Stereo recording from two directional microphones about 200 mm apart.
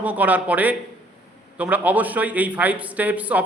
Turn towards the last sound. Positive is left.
turn(degrees=-5)  # may be behind; listen again after turning